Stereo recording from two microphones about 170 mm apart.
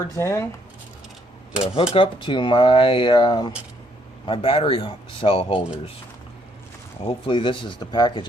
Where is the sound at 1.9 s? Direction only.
30° left (ahead or behind).